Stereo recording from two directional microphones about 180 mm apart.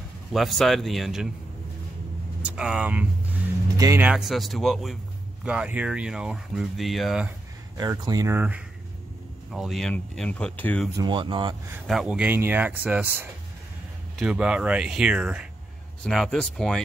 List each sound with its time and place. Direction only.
0.3 s speech: centre (ahead or behind)
2.4 s vehicle: 5° right (ahead or behind)
3.7 s speech: 20° right (ahead or behind)
4.0 s speech: 5° right (ahead or behind)
7.7 s speech: 20° right (ahead or behind); by 10.9 s 10° left (ahead or behind)
11.0 s speech: 25° right (ahead or behind)
11.9 s speech: 5° right (ahead or behind)